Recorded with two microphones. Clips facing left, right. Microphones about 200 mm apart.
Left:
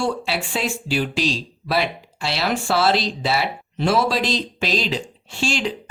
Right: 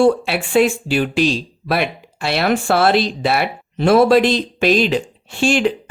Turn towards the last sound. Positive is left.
turn(degrees=-55)  # may be behind; listen again after turning